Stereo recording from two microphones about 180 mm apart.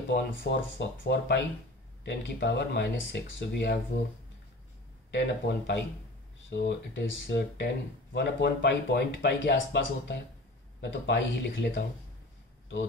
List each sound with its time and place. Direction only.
0.1 s speech: 80° left
5.1 s speech: 75° left (ahead or behind)